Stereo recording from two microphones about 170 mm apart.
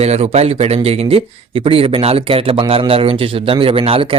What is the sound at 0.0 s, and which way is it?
A man's voice, 40° right (ahead or behind).